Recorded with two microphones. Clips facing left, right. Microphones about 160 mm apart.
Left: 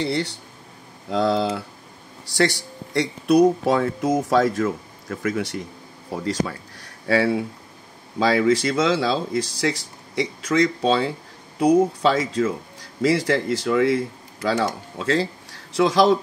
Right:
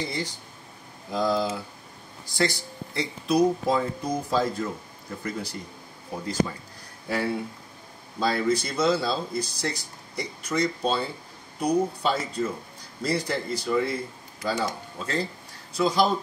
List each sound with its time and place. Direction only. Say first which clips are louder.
0.0 s speech: left 7 dB; 70° left (ahead or behind); by 5.7 s 90° left
6.1 s speech: left 2 dB; 80° left